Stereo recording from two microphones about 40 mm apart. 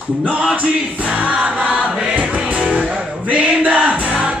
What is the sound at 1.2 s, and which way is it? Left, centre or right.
Music, right.